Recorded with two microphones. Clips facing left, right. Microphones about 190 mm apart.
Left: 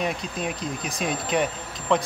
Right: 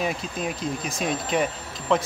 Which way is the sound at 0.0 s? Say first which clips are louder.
Even; centre (ahead or behind).